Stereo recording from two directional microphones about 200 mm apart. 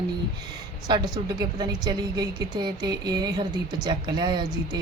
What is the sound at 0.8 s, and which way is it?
A woman's voice, 20° right (ahead or behind).